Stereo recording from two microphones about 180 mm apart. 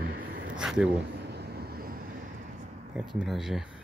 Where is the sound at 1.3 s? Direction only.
65° right (ahead or behind).